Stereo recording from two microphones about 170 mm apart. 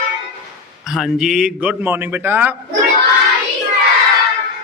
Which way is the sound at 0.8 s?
Centre (ahead or behind).